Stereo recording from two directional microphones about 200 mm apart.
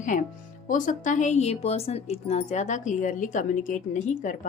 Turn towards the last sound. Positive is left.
turn(degrees=40)  # may be behind; listen again after turning